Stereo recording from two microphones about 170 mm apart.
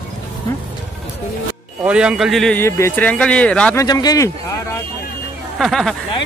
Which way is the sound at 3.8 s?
20° left (ahead or behind).